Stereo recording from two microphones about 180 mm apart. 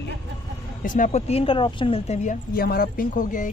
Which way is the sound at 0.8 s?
45° left (ahead or behind).